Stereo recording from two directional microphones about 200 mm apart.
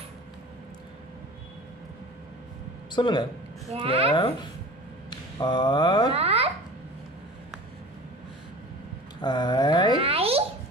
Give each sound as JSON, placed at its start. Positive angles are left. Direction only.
{"t": 2.9, "sound": "speech", "side_deg": 25}
{"t": 3.6, "sound": "speech", "side_deg": -30}
{"t": 4.1, "sound": "mantra", "side_deg": 20}
{"t": 6.1, "sound": "babbling", "side_deg": -30}
{"t": 9.2, "sound": "mantra", "side_deg": 20}
{"t": 9.9, "sound": "a sound", "side_deg": -30}